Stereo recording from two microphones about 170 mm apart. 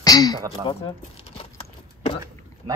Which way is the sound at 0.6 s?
35° left (ahead or behind).